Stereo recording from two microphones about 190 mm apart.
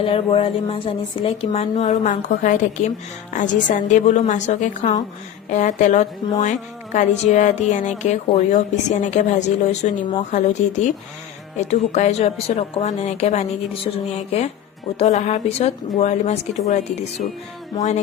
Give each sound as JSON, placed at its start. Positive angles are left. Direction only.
{"t": 0.0, "sound": "a woman's voice", "side_deg": 30}